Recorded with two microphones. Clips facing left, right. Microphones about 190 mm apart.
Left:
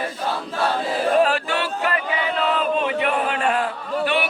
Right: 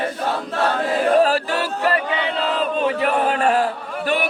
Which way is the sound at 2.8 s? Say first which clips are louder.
Right 3 dB; 35° right (ahead or behind).